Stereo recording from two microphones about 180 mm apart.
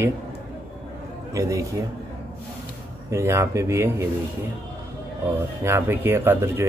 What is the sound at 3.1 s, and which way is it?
Speech, 15° right (ahead or behind).